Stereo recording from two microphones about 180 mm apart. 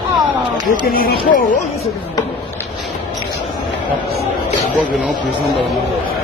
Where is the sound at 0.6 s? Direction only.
55° left (ahead or behind).